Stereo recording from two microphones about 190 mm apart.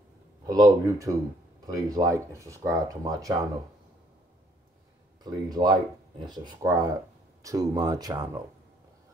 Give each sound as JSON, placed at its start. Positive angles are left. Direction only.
{"t": 0.5, "sound": "speech", "side_deg": -20}
{"t": 5.2, "sound": "speech", "side_deg": -20}